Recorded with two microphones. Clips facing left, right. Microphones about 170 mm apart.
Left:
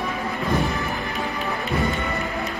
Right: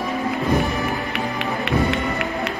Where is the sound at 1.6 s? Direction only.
70° right (ahead or behind).